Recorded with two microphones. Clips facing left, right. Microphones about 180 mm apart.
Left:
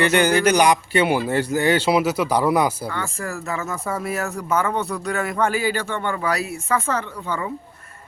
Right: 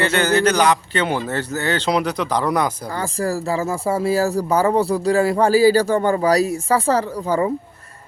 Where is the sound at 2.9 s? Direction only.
35° right (ahead or behind).